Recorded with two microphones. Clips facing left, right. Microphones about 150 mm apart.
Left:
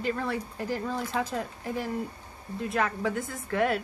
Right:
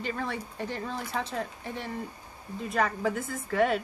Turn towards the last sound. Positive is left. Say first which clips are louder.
# right 1 dB
turn(degrees=0)  # may be behind; listen again after turning